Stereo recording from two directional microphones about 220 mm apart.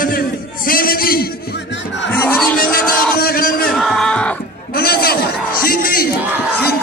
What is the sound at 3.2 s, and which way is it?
Crowd, 40° left (ahead or behind).